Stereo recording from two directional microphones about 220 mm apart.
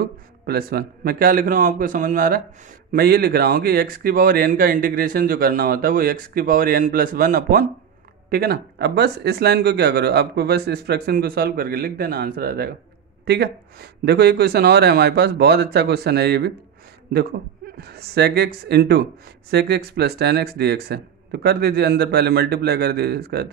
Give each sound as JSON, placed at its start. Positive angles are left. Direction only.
{"t": 0.5, "sound": "speech", "side_deg": -45}